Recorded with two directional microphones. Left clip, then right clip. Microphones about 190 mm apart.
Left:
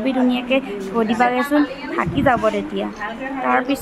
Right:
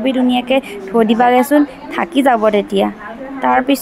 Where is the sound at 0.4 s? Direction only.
25° right (ahead or behind).